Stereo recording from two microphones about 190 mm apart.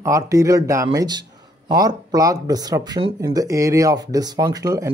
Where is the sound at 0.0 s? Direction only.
15° right (ahead or behind).